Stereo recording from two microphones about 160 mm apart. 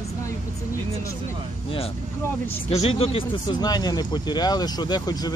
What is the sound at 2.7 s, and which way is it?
Speech, 40° left (ahead or behind).